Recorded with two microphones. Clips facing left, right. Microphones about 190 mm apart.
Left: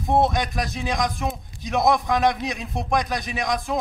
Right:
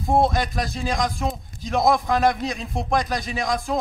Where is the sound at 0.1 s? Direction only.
Centre (ahead or behind).